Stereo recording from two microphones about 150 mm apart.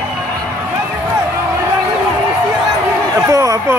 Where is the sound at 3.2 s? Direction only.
20° right (ahead or behind).